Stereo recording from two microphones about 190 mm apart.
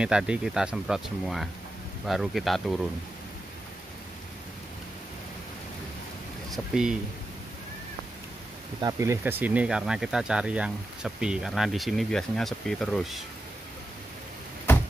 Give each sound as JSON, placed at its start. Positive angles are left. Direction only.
{"t": 0.0, "sound": "speech", "side_deg": -5}
{"t": 6.5, "sound": "speech", "side_deg": -5}
{"t": 8.8, "sound": "speech", "side_deg": -15}